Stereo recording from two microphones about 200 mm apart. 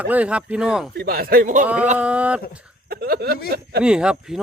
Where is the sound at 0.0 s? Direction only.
5° right (ahead or behind).